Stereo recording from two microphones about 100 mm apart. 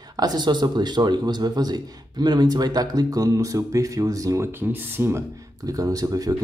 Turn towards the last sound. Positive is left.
turn(degrees=-35)  # may be behind; listen again after turning